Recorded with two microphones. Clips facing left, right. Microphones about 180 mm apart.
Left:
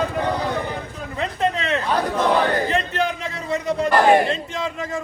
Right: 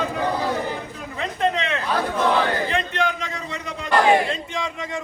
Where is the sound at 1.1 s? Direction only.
35° left (ahead or behind).